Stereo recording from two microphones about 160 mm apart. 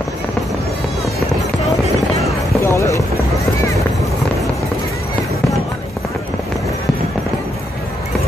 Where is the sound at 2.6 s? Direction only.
15° left (ahead or behind).